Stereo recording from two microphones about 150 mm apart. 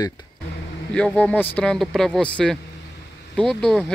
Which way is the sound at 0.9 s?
5° left (ahead or behind).